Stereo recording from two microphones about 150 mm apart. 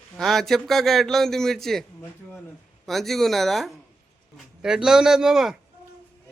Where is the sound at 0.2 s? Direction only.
Centre (ahead or behind).